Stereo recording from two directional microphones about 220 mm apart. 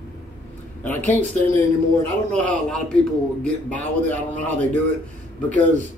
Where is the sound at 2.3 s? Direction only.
5° left (ahead or behind).